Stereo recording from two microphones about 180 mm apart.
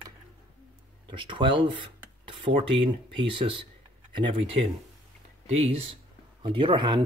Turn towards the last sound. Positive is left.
turn(degrees=-25)  # may be behind; listen again after turning